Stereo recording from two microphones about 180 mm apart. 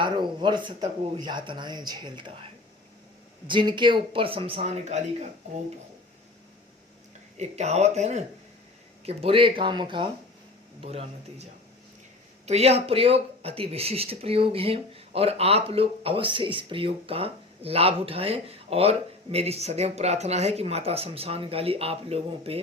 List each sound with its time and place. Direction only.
0.0 s speech: 25° right (ahead or behind)
3.4 s speech: 25° right (ahead or behind)
7.3 s speech: 35° right (ahead or behind)
12.5 s speech: 35° right (ahead or behind)